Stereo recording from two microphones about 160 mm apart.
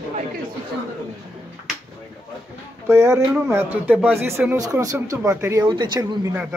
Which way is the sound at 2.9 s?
15° right (ahead or behind).